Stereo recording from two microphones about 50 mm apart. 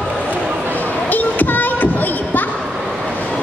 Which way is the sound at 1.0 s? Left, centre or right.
Left.